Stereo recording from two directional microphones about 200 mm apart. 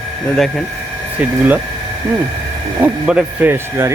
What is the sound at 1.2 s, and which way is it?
Speech, 10° right (ahead or behind).